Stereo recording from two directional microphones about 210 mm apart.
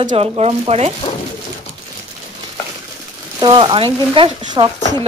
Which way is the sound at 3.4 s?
20° right (ahead or behind).